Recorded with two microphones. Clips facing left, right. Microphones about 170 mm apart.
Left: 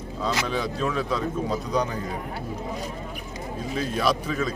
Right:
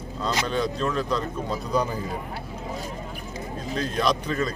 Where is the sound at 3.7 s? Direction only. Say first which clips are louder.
Even; 5° left (ahead or behind).